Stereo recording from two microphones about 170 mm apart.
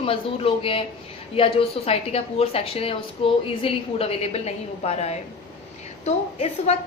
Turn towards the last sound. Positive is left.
turn(degrees=40)  # may be behind; listen again after turning